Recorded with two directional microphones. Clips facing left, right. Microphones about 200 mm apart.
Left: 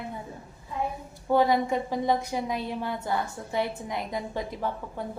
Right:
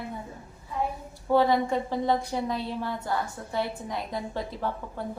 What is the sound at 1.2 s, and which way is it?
A woman's voice, 15° left (ahead or behind).